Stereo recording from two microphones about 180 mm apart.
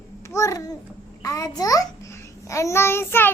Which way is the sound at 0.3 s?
20° left (ahead or behind).